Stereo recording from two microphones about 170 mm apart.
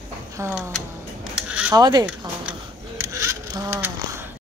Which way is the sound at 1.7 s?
20° right (ahead or behind).